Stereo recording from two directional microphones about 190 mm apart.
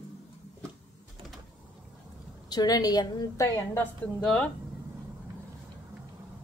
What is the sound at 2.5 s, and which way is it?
A woman's voice, 20° left (ahead or behind).